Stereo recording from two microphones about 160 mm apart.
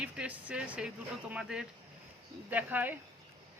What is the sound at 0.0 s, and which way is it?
Speech, 10° right (ahead or behind).